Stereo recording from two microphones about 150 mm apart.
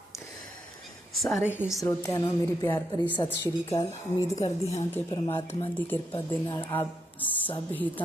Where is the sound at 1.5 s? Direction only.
15° left (ahead or behind).